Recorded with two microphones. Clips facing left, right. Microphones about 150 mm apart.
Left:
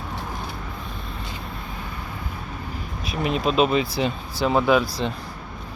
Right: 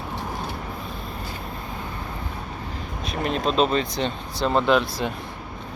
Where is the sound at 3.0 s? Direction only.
5° left (ahead or behind).